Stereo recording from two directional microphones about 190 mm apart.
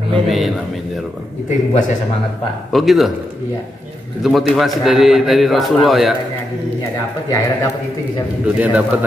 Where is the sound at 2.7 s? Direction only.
Centre (ahead or behind).